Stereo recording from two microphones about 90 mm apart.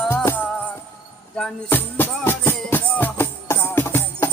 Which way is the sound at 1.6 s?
25° left (ahead or behind).